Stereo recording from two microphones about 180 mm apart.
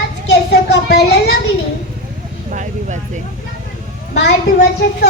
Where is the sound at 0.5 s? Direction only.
65° left (ahead or behind).